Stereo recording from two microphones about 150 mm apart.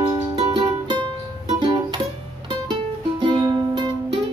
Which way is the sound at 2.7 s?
30° right (ahead or behind).